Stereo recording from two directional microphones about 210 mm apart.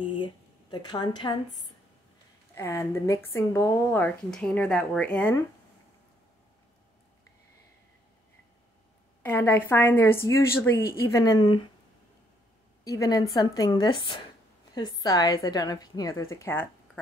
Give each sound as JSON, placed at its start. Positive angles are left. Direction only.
{"t": 0.1, "sound": "a sound", "side_deg": 20}
{"t": 2.5, "sound": "a woman's voice", "side_deg": 15}
{"t": 9.2, "sound": "a woman's voice", "side_deg": 10}
{"t": 12.8, "sound": "a woman's voice", "side_deg": 15}